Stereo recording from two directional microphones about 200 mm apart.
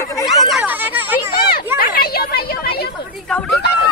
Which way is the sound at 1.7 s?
45° left (ahead or behind).